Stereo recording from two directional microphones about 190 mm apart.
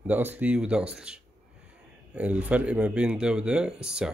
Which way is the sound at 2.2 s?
5° right (ahead or behind).